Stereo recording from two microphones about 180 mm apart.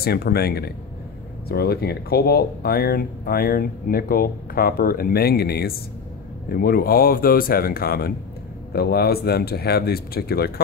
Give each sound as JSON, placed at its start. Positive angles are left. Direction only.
{"t": 0.0, "sound": "speech", "side_deg": 60}